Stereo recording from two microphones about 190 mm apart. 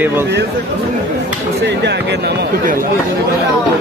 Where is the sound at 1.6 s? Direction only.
65° right (ahead or behind).